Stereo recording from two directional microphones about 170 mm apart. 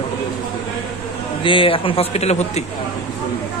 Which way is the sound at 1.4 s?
30° left (ahead or behind).